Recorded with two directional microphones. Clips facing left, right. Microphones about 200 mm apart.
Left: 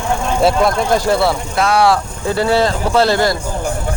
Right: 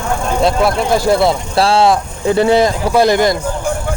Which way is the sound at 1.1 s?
15° right (ahead or behind).